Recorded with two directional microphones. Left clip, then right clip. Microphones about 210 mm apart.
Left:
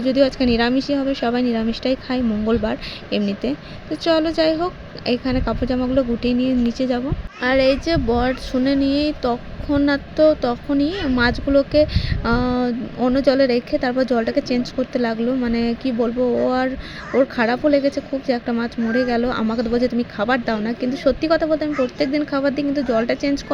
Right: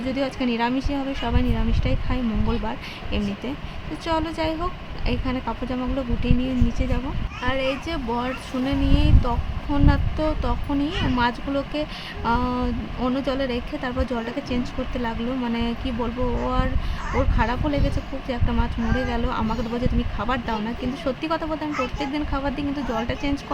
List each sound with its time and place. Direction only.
0.0 s speech: 15° left (ahead or behind)
17.2 s speech: 20° left (ahead or behind)